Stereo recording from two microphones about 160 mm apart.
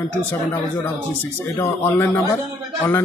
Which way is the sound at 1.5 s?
15° left (ahead or behind).